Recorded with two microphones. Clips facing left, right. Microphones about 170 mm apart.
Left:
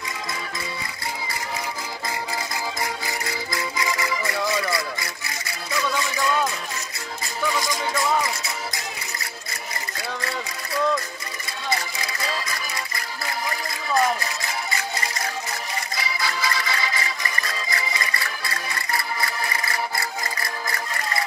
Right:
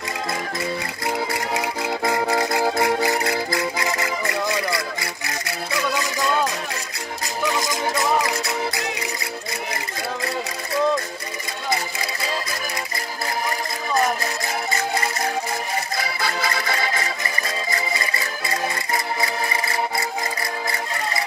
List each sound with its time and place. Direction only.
1.2 s music: 65° right (ahead or behind)
16.0 s music: 55° right (ahead or behind)